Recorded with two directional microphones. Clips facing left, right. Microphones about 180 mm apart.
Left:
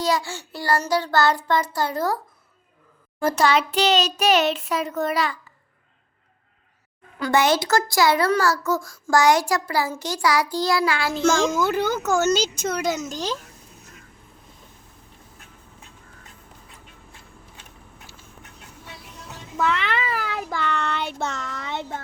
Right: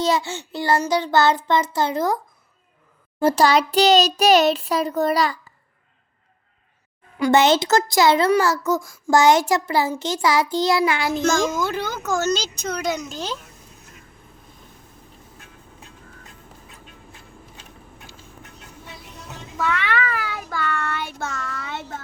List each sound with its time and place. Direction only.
0.0 s a child's voice: 25° right (ahead or behind)
3.2 s a child's voice: 30° right (ahead or behind)
7.2 s a child's voice: 25° right (ahead or behind)
11.7 s speech: 10° left (ahead or behind)
20.1 s child singing: 20° left (ahead or behind)
21.1 s speech: 15° left (ahead or behind)